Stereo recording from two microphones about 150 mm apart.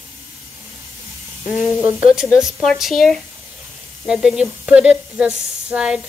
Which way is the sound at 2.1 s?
Centre (ahead or behind).